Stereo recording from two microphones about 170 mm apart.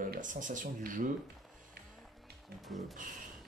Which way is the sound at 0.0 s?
50° right (ahead or behind).